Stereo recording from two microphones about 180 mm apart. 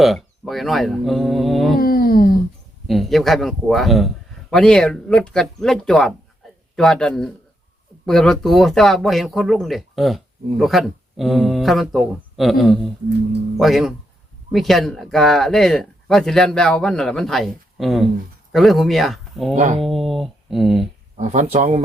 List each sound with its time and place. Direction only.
0.0 s speech: centre (ahead or behind)
1.8 s a sound: 55° left (ahead or behind)
2.8 s speech: centre (ahead or behind)
19.5 s speech: 40° right (ahead or behind)
19.8 s speech: centre (ahead or behind)
21.2 s speech: 40° right (ahead or behind)